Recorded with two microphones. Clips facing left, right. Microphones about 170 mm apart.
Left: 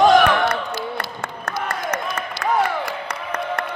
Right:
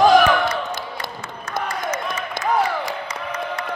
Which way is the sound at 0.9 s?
60° left (ahead or behind).